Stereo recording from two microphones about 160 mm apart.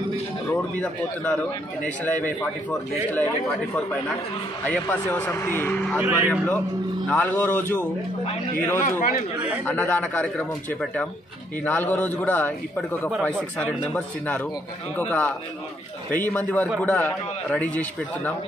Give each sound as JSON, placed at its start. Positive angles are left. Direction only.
{"t": 0.7, "sound": "speech", "side_deg": 10}
{"t": 4.6, "sound": "speech", "side_deg": 10}
{"t": 5.9, "sound": "speech", "side_deg": -10}
{"t": 7.1, "sound": "speech", "side_deg": 10}
{"t": 8.5, "sound": "a man's voice", "side_deg": 55}
{"t": 9.7, "sound": "speech", "side_deg": 15}